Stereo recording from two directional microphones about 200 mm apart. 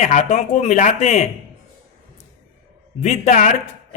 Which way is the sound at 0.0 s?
40° left (ahead or behind).